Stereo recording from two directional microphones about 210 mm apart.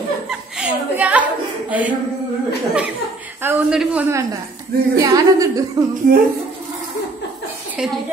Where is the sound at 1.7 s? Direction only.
5° right (ahead or behind).